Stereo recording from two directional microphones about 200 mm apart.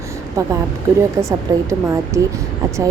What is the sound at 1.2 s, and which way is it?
Speech, 15° right (ahead or behind).